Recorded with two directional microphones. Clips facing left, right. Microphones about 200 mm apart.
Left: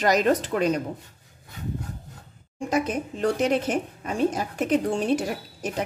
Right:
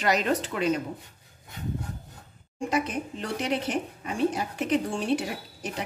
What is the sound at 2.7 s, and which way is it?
Speech, 45° left (ahead or behind).